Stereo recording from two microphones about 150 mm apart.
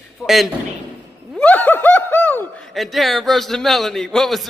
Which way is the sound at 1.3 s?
10° left (ahead or behind).